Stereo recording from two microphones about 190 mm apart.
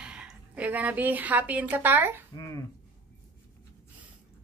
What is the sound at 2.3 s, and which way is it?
Speech, 20° left (ahead or behind).